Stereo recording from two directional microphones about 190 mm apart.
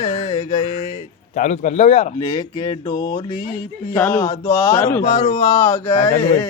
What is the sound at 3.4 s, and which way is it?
Speech, 45° left (ahead or behind).